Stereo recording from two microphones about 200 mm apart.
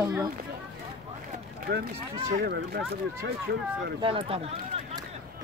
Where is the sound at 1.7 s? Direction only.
45° right (ahead or behind).